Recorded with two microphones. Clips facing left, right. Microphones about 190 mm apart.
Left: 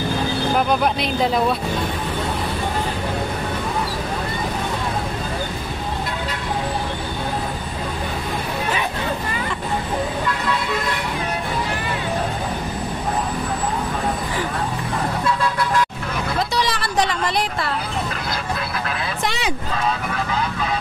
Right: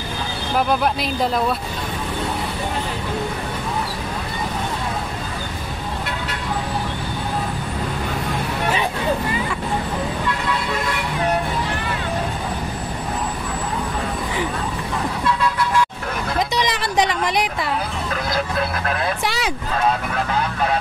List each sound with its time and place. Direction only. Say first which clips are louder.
16.5 s speech: right 1 dB; 15° right (ahead or behind)
19.2 s speech: even; centre (ahead or behind)